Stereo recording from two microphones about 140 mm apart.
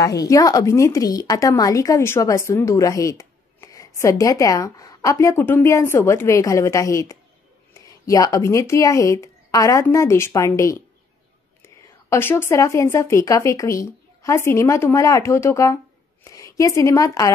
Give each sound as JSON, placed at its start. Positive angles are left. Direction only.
{"t": 0.0, "sound": "a woman's voice", "side_deg": 25}